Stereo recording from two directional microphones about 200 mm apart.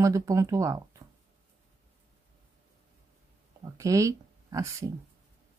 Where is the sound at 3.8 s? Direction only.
15° right (ahead or behind).